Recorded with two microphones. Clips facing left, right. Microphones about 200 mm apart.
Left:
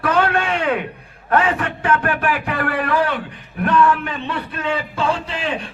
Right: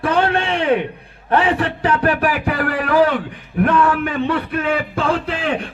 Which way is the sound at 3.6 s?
50° right (ahead or behind).